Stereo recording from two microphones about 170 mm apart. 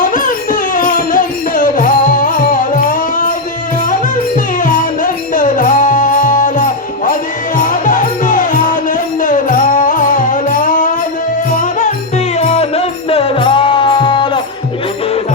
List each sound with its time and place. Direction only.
0.0 s music: 50° left (ahead or behind); by 14.4 s 30° left (ahead or behind)